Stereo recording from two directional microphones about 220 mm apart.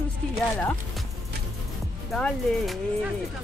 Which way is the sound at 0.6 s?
5° left (ahead or behind).